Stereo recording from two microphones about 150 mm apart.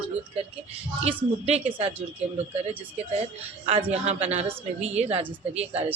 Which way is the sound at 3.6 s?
45° right (ahead or behind).